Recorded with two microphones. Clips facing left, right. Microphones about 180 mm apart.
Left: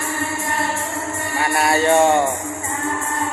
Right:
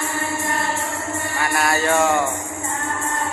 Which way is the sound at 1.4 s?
30° left (ahead or behind).